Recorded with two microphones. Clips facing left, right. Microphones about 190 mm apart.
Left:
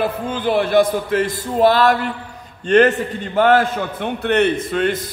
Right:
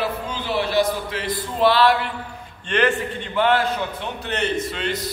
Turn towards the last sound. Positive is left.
turn(degrees=50)  # may be behind; listen again after turning